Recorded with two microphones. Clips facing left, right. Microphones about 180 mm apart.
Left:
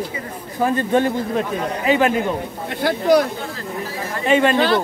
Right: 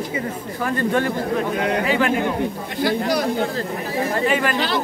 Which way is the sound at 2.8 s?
55° left (ahead or behind).